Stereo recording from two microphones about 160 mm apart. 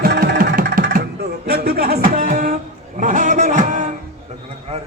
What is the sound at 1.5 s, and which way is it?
Music, 80° right.